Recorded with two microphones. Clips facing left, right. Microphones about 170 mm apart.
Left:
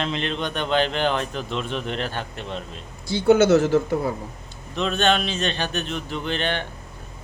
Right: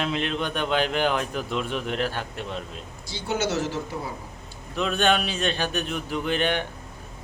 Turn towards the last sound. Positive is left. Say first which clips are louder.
# right 1 dB
turn(degrees=-10)  # may be behind; listen again after turning